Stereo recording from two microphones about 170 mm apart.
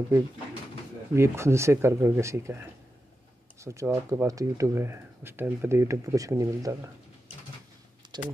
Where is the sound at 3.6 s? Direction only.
20° right (ahead or behind).